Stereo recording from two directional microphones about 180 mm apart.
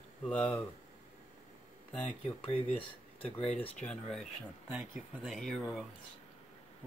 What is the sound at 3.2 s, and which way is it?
Speech, 30° left (ahead or behind).